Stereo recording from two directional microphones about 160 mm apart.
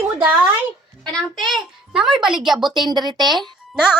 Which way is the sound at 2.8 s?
25° right (ahead or behind).